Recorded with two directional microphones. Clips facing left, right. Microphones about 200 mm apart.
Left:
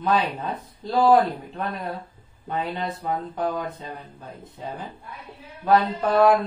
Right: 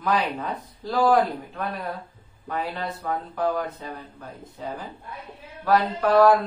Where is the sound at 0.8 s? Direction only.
25° left (ahead or behind).